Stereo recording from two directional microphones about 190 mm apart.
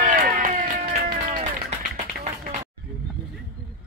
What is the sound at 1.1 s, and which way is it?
Music, 30° right (ahead or behind).